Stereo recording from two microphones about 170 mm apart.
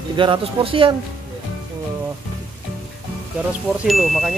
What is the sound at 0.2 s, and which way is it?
Speech, 30° right (ahead or behind).